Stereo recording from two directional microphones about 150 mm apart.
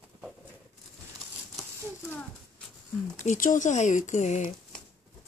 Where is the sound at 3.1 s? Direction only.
55° left (ahead or behind).